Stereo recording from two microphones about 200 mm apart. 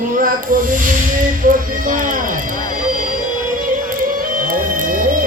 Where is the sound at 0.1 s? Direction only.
45° right (ahead or behind).